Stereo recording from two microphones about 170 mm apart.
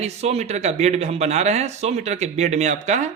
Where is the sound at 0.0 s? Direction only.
40° right (ahead or behind).